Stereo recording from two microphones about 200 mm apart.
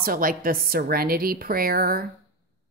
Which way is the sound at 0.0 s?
45° right (ahead or behind).